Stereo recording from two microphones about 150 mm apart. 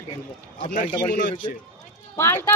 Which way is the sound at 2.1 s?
15° left (ahead or behind).